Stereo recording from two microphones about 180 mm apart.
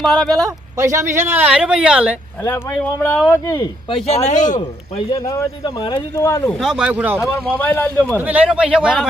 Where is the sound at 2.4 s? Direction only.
15° left (ahead or behind).